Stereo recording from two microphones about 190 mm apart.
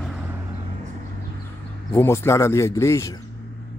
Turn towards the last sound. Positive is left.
turn(degrees=15)  # may be behind; listen again after turning